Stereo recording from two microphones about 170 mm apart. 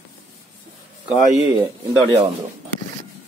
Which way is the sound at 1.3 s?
15° right (ahead or behind).